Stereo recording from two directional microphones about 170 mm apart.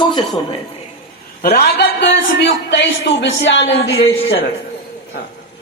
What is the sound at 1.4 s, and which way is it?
Speech, 65° left (ahead or behind).